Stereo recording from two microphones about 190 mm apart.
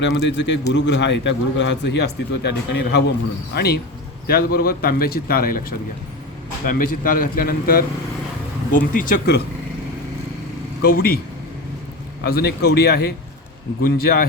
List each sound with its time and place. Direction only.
0.0 s a man's voice: 65° left (ahead or behind)
10.8 s a man's voice: 55° left (ahead or behind)
12.2 s a man's voice: 55° left (ahead or behind)